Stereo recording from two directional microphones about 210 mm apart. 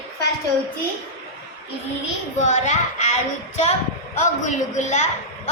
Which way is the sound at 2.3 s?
35° left (ahead or behind).